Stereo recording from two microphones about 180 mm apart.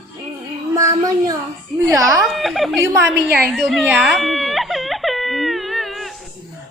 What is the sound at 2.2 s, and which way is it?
Speech, centre (ahead or behind).